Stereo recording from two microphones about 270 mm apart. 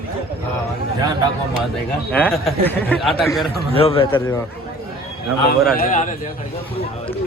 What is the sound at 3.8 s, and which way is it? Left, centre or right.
Speech, left.